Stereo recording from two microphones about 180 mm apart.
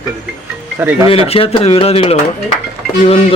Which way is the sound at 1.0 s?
30° left (ahead or behind).